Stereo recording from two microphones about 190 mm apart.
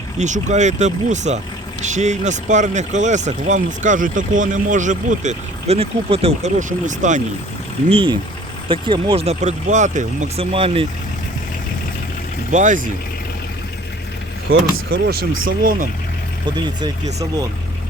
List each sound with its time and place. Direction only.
0.2 s speech: 40° right (ahead or behind)
7.9 s speech: 30° right (ahead or behind)
12.5 s speech: 40° right (ahead or behind)
14.9 s speech: 55° right (ahead or behind)